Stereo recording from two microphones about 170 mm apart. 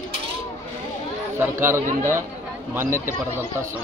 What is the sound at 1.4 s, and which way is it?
Speech, 15° right (ahead or behind).